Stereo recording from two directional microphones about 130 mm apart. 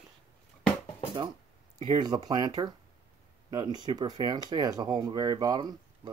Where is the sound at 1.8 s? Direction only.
35° right (ahead or behind).